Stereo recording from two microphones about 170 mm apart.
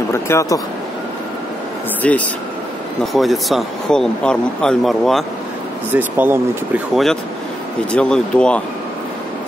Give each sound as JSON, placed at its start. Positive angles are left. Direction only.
{"t": 0.1, "sound": "speech", "side_deg": 15}
{"t": 2.0, "sound": "speech", "side_deg": 5}
{"t": 5.9, "sound": "speech", "side_deg": -10}
{"t": 7.9, "sound": "speech", "side_deg": 5}